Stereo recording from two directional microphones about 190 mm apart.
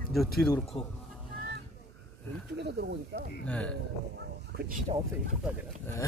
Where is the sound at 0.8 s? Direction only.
25° left (ahead or behind).